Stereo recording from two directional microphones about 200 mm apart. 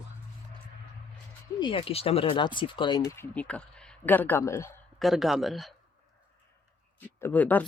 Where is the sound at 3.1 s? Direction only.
10° left (ahead or behind).